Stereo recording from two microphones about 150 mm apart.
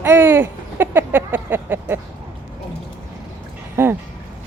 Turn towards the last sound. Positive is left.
turn(degrees=-15)  # may be behind; listen again after turning